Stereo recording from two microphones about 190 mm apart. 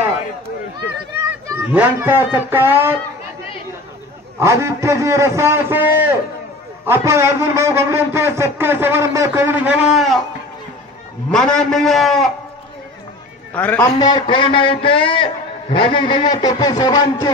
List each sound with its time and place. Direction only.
1.5 s a man's voice: 10° right (ahead or behind)
4.4 s a man's voice: 15° right (ahead or behind)
11.2 s a man's voice: 5° left (ahead or behind)
13.5 s a man's voice: 10° left (ahead or behind)
13.9 s a man's voice: 25° left (ahead or behind)